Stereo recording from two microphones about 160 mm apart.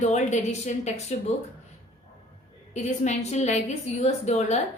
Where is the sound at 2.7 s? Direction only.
45° left (ahead or behind).